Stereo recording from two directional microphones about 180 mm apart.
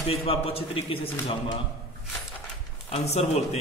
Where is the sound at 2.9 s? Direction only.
35° left (ahead or behind).